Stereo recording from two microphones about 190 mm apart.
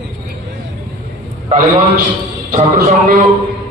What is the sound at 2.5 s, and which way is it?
Speech, 40° right (ahead or behind).